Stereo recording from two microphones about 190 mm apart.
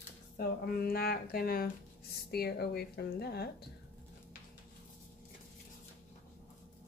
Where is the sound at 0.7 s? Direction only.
55° left (ahead or behind).